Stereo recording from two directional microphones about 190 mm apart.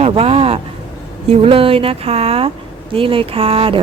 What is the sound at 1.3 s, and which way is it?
A woman's voice, 30° right (ahead or behind).